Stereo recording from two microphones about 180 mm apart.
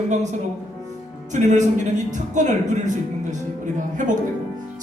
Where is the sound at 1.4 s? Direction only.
35° right (ahead or behind).